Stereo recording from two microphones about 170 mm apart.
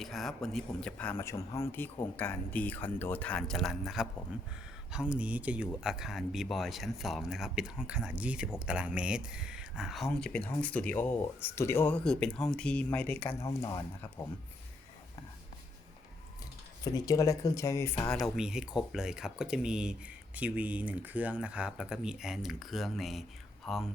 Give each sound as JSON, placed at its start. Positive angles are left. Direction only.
{"t": 0.0, "sound": "speech", "side_deg": 0}
{"t": 16.8, "sound": "speech", "side_deg": 20}
{"t": 18.1, "sound": "speech", "side_deg": 0}